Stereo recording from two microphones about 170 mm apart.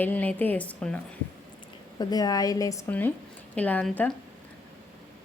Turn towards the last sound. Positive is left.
turn(degrees=10)  # may be behind; listen again after turning